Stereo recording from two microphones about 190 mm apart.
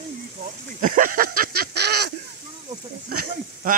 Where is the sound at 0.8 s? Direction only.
50° right (ahead or behind).